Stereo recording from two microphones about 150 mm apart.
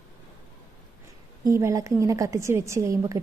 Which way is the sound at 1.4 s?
20° right (ahead or behind).